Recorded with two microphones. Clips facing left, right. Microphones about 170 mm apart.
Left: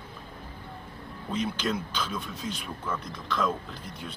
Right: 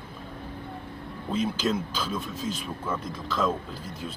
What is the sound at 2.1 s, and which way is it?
Speech, centre (ahead or behind).